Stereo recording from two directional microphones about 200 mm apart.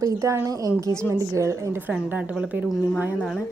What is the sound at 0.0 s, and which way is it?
Speech, 15° right (ahead or behind).